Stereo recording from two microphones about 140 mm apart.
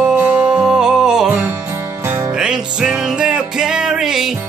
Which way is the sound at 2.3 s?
5° right (ahead or behind).